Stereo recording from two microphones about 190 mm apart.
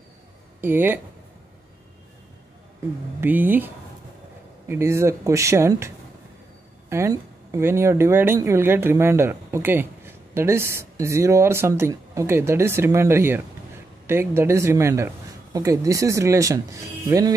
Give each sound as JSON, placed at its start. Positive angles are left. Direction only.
{"t": 0.6, "sound": "speech", "side_deg": -10}
{"t": 3.2, "sound": "speech", "side_deg": -10}